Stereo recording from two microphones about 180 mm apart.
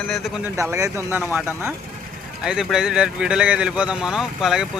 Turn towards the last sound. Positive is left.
turn(degrees=0)  # may be behind; listen again after turning